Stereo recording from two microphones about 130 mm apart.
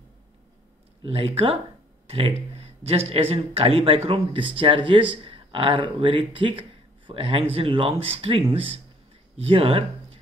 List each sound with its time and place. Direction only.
1.0 s speech: 50° right (ahead or behind)